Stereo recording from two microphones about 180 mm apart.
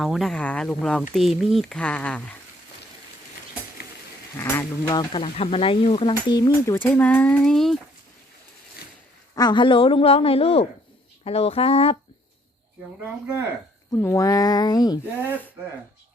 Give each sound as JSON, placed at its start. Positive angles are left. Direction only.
{"t": 0.0, "sound": "speech", "side_deg": 0}
{"t": 4.4, "sound": "speech", "side_deg": 15}
{"t": 9.3, "sound": "speech", "side_deg": 25}
{"t": 13.9, "sound": "speech", "side_deg": 15}